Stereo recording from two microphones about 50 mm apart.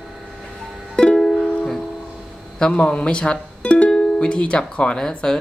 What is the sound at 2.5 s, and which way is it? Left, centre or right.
Speech, centre.